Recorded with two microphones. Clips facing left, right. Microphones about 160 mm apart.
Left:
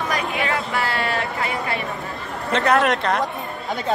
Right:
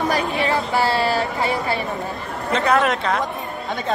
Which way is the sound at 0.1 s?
35° right (ahead or behind).